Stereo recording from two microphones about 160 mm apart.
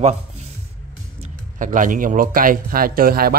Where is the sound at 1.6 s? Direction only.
55° right (ahead or behind).